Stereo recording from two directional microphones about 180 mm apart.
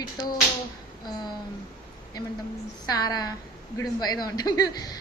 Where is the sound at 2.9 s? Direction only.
20° left (ahead or behind).